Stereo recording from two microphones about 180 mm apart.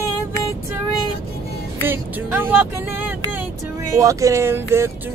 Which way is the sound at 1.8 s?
10° right (ahead or behind).